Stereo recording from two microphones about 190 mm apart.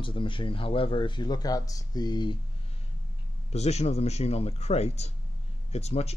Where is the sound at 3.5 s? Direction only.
35° left (ahead or behind).